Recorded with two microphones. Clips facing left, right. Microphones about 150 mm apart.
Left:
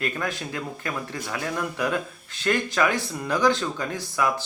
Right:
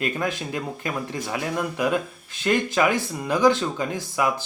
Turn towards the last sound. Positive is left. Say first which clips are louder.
# right 2 dB
turn(degrees=-15)  # may be behind; listen again after turning